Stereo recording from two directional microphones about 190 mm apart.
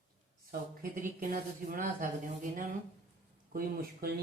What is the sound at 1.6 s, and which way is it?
Speech, 45° right (ahead or behind).